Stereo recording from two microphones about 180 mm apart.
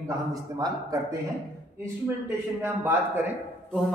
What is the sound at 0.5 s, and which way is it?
Speech, 20° right (ahead or behind).